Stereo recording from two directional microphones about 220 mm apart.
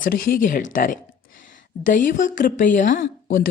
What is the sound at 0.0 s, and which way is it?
Speech, 40° left (ahead or behind).